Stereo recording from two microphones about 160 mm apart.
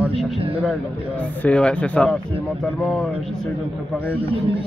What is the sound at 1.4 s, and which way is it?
Speech, 5° left (ahead or behind).